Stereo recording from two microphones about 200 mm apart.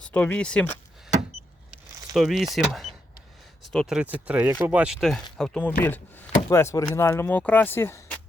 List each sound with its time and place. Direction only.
0.0 s speech: 5° left (ahead or behind)
2.1 s speech: centre (ahead or behind)
3.6 s speech: centre (ahead or behind)